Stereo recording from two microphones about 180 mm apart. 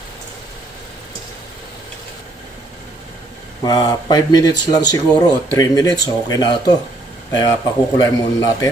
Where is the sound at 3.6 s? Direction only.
20° left (ahead or behind).